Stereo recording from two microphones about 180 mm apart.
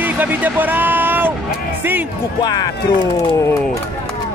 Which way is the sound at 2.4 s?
20° left (ahead or behind).